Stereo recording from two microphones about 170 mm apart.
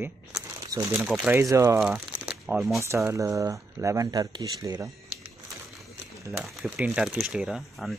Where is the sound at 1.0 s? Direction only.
5° right (ahead or behind).